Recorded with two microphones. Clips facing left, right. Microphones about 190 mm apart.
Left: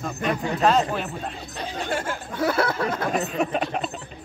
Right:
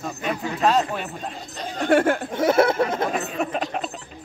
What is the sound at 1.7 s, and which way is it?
Speech, 60° right (ahead or behind).